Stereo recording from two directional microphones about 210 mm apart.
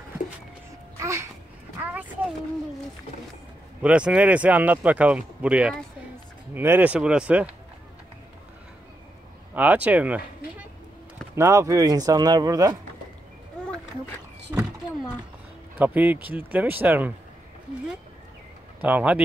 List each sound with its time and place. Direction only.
0.9 s babbling: 15° right (ahead or behind)
1.8 s a sound: 5° right (ahead or behind)
3.8 s speech: 5° right (ahead or behind)
9.6 s speech: 5° right (ahead or behind)
14.5 s power windows: 10° right (ahead or behind)
15.8 s speech: 10° right (ahead or behind)
18.8 s speech: 10° right (ahead or behind)